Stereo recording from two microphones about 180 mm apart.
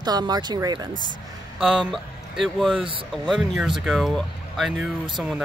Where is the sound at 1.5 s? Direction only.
5° right (ahead or behind).